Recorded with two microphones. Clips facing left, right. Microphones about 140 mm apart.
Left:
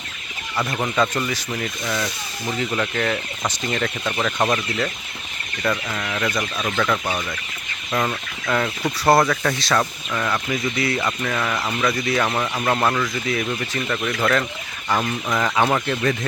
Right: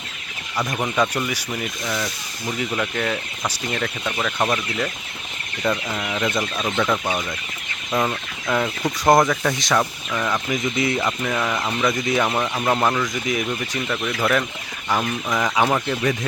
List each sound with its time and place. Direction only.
0.5 s speech: 10° right (ahead or behind)
5.6 s speech: 15° right (ahead or behind)
11.0 s speech: 10° right (ahead or behind)
12.3 s speech: 5° right (ahead or behind)